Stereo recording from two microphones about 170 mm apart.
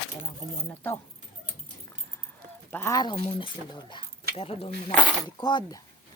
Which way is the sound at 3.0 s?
25° left (ahead or behind).